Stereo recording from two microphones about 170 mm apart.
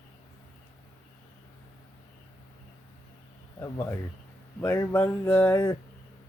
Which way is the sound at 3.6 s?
15° left (ahead or behind).